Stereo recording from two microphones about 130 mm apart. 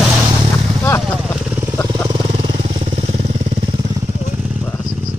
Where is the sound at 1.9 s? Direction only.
40° right (ahead or behind).